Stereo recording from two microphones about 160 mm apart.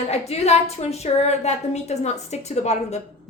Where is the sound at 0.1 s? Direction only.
40° left (ahead or behind).